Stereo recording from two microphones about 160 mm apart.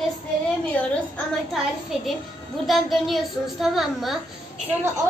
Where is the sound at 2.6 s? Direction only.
Centre (ahead or behind).